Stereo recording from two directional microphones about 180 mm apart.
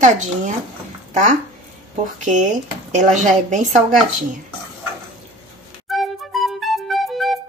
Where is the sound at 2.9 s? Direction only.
45° right (ahead or behind).